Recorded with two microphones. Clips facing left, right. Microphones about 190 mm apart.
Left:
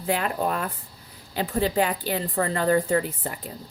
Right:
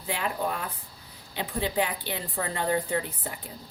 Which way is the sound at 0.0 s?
50° left (ahead or behind).